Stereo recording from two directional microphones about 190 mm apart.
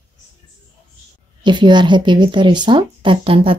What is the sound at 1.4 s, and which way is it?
Speech, 25° right (ahead or behind).